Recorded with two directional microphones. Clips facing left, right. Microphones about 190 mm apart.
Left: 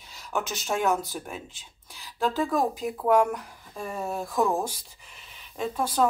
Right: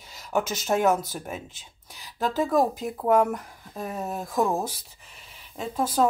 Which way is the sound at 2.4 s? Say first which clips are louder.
Right 5 dB; 5° right (ahead or behind).